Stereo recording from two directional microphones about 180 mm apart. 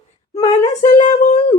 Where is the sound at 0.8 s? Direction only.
40° left (ahead or behind).